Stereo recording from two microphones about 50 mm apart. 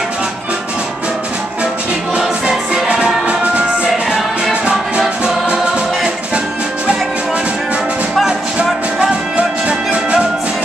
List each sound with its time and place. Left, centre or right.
2.4 s music: centre
4.1 s music: centre
9.4 s music: right